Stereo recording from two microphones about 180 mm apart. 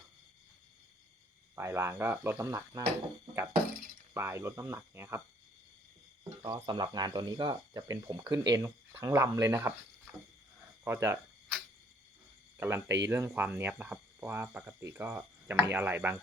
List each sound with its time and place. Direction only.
1.5 s speech: 15° right (ahead or behind)
4.1 s speech: 15° right (ahead or behind)
6.4 s speech: 20° right (ahead or behind)
10.8 s speech: 15° right (ahead or behind)
12.5 s speech: 15° right (ahead or behind)